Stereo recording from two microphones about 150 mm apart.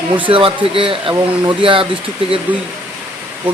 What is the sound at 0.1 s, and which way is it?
Speech, 35° right (ahead or behind).